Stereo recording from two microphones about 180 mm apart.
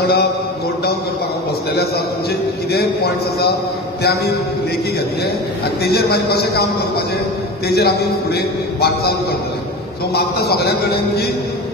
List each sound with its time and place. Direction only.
0.0 s a man's voice: 65° left (ahead or behind)
2.7 s a man's voice: 60° left (ahead or behind)
5.9 s a man's voice: 65° left (ahead or behind)
10.1 s a man's voice: 60° left (ahead or behind)